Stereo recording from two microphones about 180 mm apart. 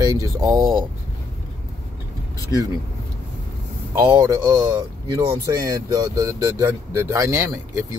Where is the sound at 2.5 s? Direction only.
20° right (ahead or behind).